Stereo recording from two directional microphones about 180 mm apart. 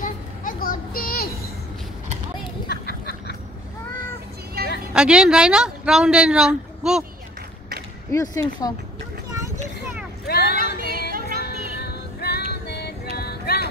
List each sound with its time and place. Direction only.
0.0 s a sound: 50° left (ahead or behind)
2.7 s a sound: 65° left (ahead or behind)
4.6 s vehicle: 60° right (ahead or behind)
4.9 s speech: 5° right (ahead or behind)
8.1 s speech: 20° left (ahead or behind)
10.2 s vehicle: 65° left (ahead or behind)
10.6 s female singing: 55° right (ahead or behind)
11.4 s music: 60° left (ahead or behind)
13.2 s a sound: 60° left (ahead or behind)